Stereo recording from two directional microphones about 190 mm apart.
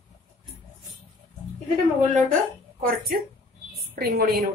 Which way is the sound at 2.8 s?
50° right (ahead or behind).